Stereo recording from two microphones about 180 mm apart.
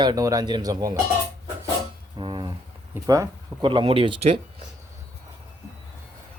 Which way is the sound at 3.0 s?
20° right (ahead or behind).